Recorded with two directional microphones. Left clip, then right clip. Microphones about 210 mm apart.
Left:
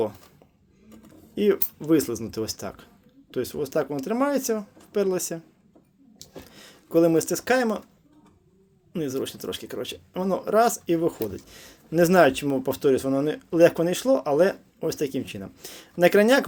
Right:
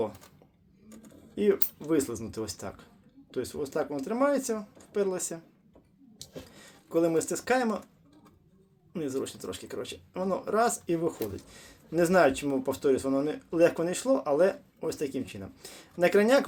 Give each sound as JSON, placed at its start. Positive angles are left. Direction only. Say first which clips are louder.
{"t": 1.4, "sound": "speech", "louder": "left 4 dB", "side_deg": 35}
{"t": 6.5, "sound": "speech", "louder": "left 7 dB", "side_deg": 35}
{"t": 8.9, "sound": "speech", "louder": "left 4 dB", "side_deg": 35}